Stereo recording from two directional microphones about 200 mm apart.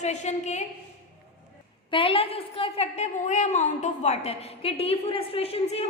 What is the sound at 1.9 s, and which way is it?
A woman's voice, 25° left (ahead or behind).